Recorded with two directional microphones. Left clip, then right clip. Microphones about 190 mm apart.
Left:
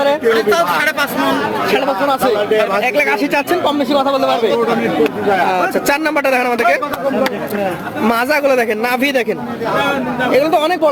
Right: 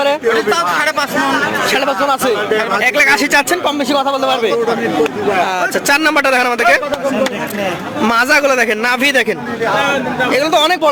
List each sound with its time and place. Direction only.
2.8 s a man's voice: centre (ahead or behind)
5.9 s a man's voice: centre (ahead or behind)
8.0 s a man's voice: centre (ahead or behind)
10.3 s a man's voice: centre (ahead or behind)